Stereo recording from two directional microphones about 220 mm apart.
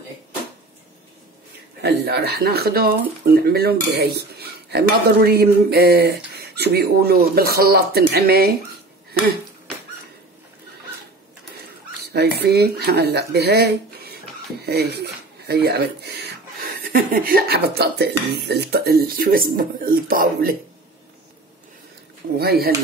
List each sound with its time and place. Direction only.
1.8 s speech: 50° right (ahead or behind)
12.0 s speech: 45° right (ahead or behind)
22.4 s speech: 45° right (ahead or behind)